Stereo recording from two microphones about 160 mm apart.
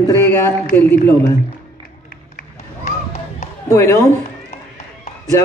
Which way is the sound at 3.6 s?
20° left (ahead or behind).